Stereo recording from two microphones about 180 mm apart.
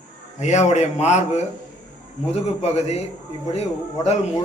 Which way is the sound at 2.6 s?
35° left (ahead or behind).